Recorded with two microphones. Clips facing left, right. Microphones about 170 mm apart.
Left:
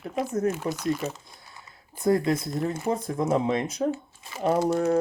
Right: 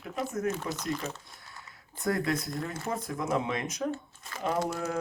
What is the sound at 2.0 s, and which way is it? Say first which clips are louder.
Speech: left 6 dB; 20° left (ahead or behind).